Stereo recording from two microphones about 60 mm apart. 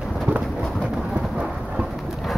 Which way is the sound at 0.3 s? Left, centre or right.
Right.